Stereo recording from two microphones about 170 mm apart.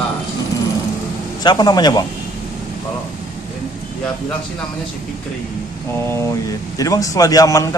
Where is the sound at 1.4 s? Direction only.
25° left (ahead or behind).